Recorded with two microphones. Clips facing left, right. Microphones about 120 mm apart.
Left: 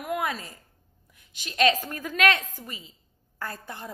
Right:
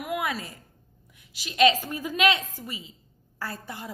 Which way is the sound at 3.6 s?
10° right (ahead or behind).